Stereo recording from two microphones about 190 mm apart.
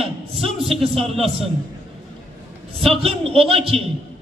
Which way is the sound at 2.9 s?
30° right (ahead or behind).